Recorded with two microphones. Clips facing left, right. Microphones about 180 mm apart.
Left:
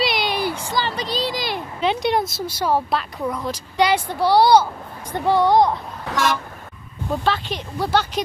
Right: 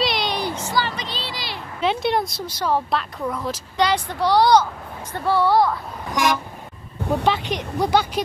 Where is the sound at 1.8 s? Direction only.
Centre (ahead or behind).